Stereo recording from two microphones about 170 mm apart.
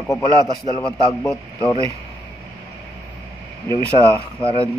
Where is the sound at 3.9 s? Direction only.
30° left (ahead or behind).